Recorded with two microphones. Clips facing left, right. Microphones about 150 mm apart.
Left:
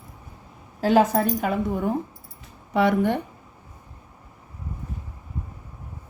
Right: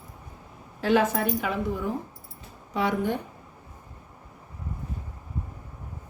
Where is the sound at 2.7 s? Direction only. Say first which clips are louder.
Left 6 dB; 65° left (ahead or behind).